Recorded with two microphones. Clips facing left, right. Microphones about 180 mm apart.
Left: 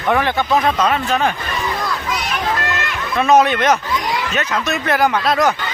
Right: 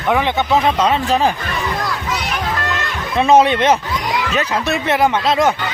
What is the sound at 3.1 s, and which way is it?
Speech, 30° right (ahead or behind).